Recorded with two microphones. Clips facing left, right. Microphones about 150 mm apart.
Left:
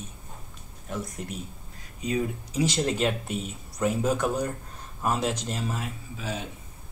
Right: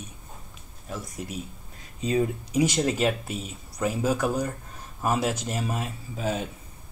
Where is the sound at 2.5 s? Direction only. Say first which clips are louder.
Right 1 dB; 15° right (ahead or behind).